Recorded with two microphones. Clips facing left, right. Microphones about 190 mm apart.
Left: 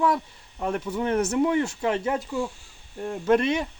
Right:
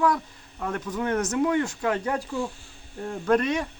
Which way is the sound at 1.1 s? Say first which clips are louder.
Left 2 dB; 10° left (ahead or behind).